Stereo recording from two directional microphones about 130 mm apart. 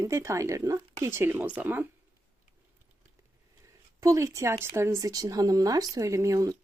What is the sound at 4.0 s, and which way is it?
Speech, 25° right (ahead or behind).